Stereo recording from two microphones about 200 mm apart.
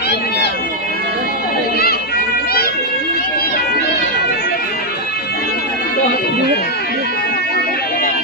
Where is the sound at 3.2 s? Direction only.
50° left (ahead or behind).